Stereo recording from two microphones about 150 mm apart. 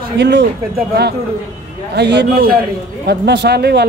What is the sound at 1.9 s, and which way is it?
Speech, 90° right.